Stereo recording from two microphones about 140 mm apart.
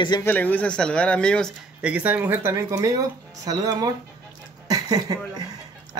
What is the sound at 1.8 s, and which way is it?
Speech, 10° right (ahead or behind).